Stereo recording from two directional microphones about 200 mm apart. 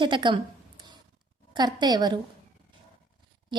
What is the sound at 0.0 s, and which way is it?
Speech, 25° right (ahead or behind).